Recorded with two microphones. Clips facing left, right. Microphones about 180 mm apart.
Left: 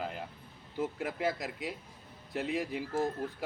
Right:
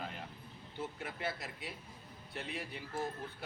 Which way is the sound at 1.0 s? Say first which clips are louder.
Left 8 dB; 90° left.